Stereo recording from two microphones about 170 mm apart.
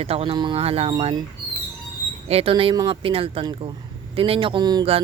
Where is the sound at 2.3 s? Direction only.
35° right (ahead or behind).